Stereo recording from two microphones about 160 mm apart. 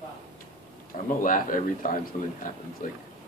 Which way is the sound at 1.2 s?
60° left (ahead or behind).